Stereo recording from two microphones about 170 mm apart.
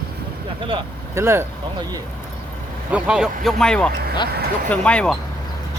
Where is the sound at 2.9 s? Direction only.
5° right (ahead or behind).